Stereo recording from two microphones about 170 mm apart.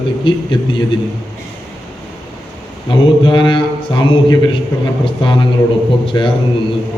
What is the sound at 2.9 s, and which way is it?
Speech, 30° left (ahead or behind).